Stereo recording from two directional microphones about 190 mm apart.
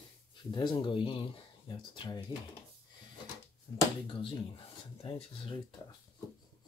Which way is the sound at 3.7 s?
20° left (ahead or behind).